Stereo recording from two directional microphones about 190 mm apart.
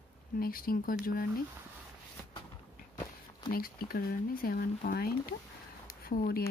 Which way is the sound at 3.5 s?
50° left (ahead or behind).